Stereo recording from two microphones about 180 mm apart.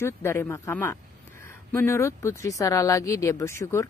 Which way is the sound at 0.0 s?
15° left (ahead or behind).